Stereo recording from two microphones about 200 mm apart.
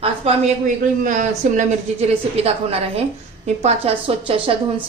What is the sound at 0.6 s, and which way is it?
A woman's voice, 40° right (ahead or behind).